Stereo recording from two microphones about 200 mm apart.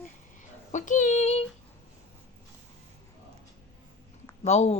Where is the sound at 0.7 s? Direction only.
40° left (ahead or behind).